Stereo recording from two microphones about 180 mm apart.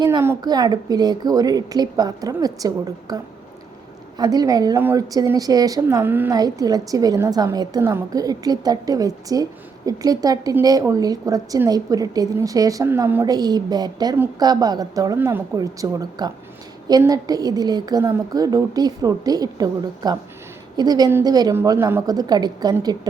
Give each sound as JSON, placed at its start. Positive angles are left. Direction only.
{"t": 0.0, "sound": "a woman's voice", "side_deg": -20}
{"t": 4.2, "sound": "a woman's voice", "side_deg": -20}